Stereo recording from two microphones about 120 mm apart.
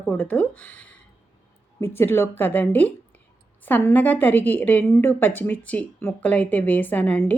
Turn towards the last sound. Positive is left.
turn(degrees=10)  # may be behind; listen again after turning